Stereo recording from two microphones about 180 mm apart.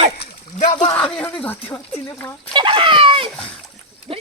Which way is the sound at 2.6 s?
30° right (ahead or behind).